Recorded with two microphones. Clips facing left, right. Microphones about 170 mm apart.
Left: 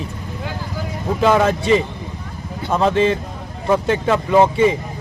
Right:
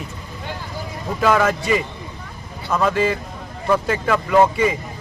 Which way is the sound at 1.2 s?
25° left (ahead or behind).